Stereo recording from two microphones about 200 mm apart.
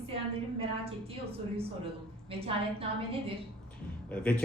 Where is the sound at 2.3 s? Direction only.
25° right (ahead or behind).